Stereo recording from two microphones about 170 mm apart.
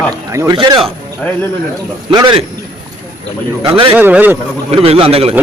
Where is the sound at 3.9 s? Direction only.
10° right (ahead or behind).